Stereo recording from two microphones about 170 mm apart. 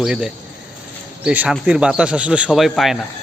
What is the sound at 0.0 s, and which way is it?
Speech, centre (ahead or behind).